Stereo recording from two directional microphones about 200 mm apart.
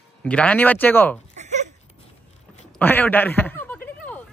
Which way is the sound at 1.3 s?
35° right (ahead or behind).